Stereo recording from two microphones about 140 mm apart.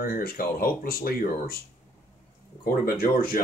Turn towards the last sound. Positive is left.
turn(degrees=90)